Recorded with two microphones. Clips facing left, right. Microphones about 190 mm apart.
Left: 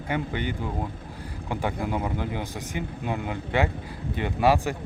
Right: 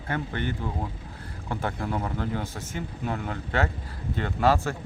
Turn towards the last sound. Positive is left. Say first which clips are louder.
# left 1 dB
turn(degrees=15)  # may be behind; listen again after turning